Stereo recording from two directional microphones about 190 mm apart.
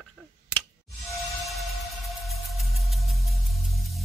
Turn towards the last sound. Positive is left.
turn(degrees=0)  # may be behind; listen again after turning